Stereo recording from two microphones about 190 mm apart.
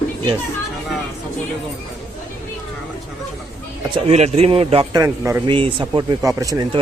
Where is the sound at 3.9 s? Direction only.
35° right (ahead or behind).